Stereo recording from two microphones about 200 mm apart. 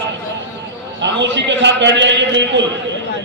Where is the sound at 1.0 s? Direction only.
60° right (ahead or behind).